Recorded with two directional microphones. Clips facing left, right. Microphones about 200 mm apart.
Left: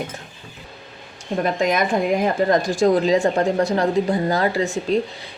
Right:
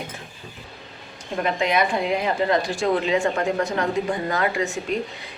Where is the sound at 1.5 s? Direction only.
40° left (ahead or behind).